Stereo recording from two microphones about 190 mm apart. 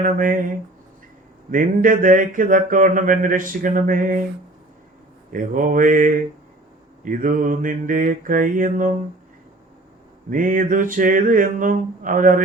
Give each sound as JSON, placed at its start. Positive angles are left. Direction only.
{"t": 0.0, "sound": "speech", "side_deg": -45}
{"t": 5.3, "sound": "speech", "side_deg": -45}
{"t": 10.2, "sound": "speech", "side_deg": -45}